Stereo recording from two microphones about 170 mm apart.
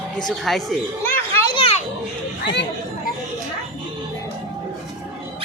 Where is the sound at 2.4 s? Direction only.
90° left.